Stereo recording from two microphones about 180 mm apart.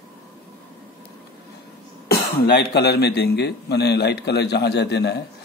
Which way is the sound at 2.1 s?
65° left (ahead or behind).